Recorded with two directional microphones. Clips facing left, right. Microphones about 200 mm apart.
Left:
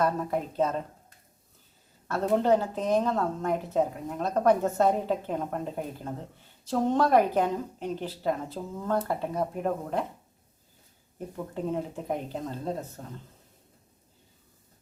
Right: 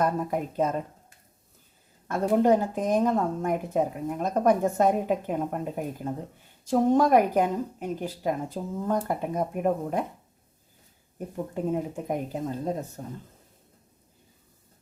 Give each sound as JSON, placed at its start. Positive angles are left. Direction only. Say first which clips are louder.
{"t": 0.0, "sound": "a woman's voice", "louder": "right 1 dB", "side_deg": -10}
{"t": 2.0, "sound": "a woman's voice", "louder": "right 2 dB", "side_deg": -10}
{"t": 11.5, "sound": "a woman's voice", "louder": "right 3 dB", "side_deg": -10}